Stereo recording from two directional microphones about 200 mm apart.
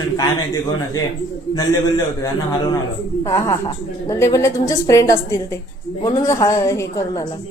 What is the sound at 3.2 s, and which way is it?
Speech, 15° left (ahead or behind).